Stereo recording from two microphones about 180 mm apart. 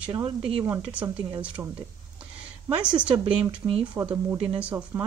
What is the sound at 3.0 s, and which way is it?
Speech, 10° right (ahead or behind).